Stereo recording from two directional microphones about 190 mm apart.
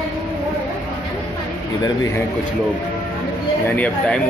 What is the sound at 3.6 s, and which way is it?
Speech, 10° left (ahead or behind).